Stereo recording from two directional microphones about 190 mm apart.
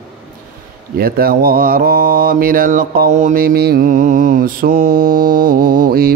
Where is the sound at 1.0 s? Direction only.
50° right (ahead or behind).